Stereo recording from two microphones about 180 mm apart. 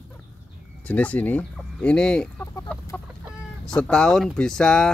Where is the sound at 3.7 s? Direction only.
5° left (ahead or behind).